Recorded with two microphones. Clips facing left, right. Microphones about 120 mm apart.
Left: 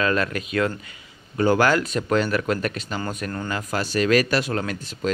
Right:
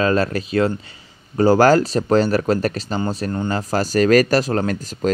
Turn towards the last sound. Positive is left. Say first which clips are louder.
# right 6 dB
turn(degrees=-40)  # may be behind; listen again after turning